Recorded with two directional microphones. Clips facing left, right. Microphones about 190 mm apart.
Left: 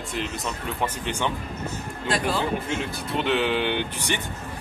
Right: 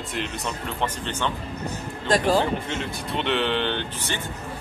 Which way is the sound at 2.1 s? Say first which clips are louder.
Right 5 dB; 40° right (ahead or behind).